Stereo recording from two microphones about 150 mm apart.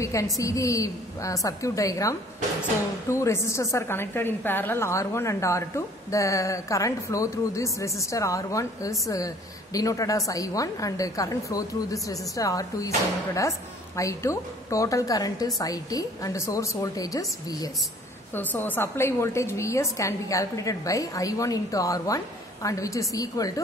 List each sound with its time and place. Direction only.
0.0 s a woman's voice: 20° left (ahead or behind)
18.3 s a woman's voice: 15° left (ahead or behind)